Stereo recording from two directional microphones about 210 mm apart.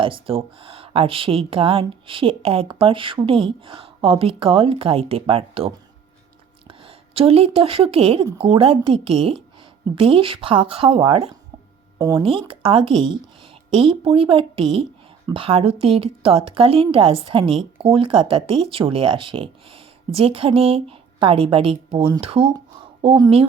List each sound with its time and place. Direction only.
0.0 s speech: 25° right (ahead or behind)